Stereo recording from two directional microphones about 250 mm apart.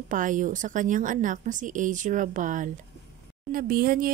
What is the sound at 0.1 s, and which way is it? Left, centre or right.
Speech, right.